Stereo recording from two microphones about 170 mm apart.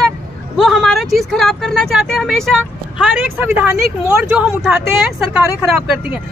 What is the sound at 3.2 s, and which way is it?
Speech, 10° right (ahead or behind).